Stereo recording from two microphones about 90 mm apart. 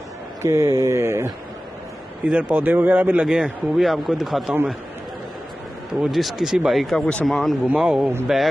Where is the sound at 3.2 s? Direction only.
5° right (ahead or behind).